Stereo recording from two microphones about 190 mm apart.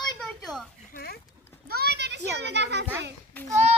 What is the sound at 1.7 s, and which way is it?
A child's voice, 55° right (ahead or behind).